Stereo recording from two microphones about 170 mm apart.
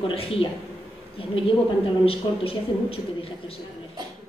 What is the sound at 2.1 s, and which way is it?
A man's voice, 35° left (ahead or behind).